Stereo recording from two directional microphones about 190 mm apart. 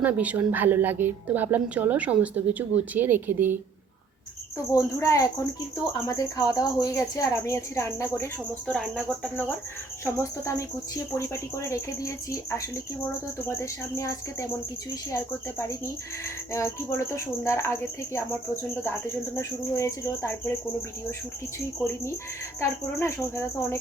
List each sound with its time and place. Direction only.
0.0 s a woman's voice: 5° right (ahead or behind)
4.7 s speech: 15° left (ahead or behind)
8.7 s speech: centre (ahead or behind)
10.0 s speech: 15° left (ahead or behind)
23.0 s speech: 15° left (ahead or behind)